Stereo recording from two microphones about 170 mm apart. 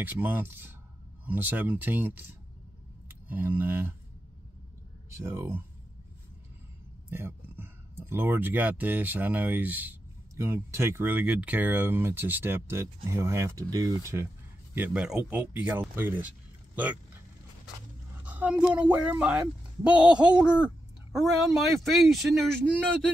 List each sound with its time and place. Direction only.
0.0 s speech: 10° right (ahead or behind)
3.3 s speech: 10° right (ahead or behind)
5.1 s speech: 15° right (ahead or behind)
7.1 s speech: 15° right (ahead or behind)
18.2 s speech: 10° right (ahead or behind)